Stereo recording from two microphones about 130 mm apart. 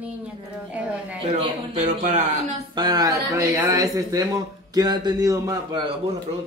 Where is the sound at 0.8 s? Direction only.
10° right (ahead or behind).